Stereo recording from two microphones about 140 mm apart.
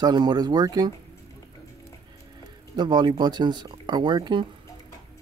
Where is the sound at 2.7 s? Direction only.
30° right (ahead or behind).